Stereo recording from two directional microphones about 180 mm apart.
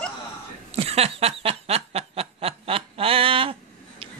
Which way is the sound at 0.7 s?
35° right (ahead or behind).